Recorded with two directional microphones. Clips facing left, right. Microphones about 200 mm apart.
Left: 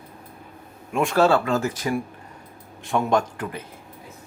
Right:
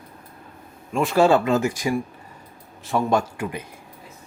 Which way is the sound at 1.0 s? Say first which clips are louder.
Right 2 dB; 15° right (ahead or behind).